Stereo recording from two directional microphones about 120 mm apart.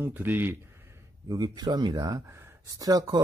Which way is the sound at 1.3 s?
35° right (ahead or behind).